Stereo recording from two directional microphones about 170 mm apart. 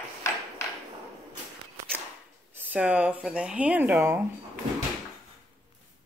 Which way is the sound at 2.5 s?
10° right (ahead or behind).